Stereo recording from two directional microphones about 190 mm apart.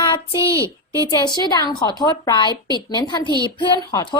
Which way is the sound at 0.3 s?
15° right (ahead or behind).